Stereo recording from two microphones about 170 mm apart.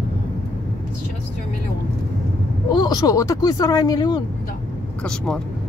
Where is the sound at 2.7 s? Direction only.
25° left (ahead or behind).